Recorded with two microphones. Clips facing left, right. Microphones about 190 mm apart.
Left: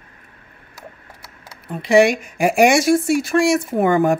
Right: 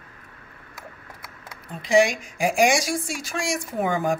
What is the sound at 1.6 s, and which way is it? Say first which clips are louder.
Speech: left 6 dB; 65° left (ahead or behind).